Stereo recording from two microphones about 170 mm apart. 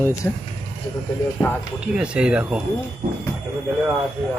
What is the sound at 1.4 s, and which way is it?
Speech, 15° left (ahead or behind).